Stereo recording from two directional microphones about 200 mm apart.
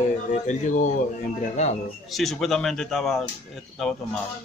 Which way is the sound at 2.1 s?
Centre (ahead or behind).